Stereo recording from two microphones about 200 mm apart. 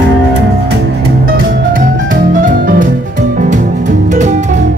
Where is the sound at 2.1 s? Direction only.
45° right (ahead or behind).